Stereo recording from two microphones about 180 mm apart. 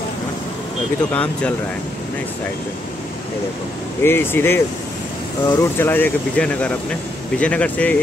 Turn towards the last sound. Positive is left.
turn(degrees=5)  # may be behind; listen again after turning